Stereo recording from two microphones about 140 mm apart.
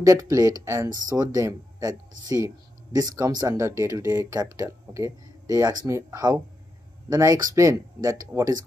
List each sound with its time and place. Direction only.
0.0 s speech: 25° right (ahead or behind)